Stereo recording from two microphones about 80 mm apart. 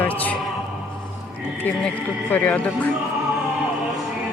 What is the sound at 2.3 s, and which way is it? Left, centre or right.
Speech, centre.